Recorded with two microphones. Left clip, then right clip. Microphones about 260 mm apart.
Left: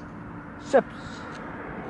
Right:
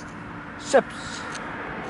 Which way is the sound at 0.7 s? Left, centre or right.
Centre.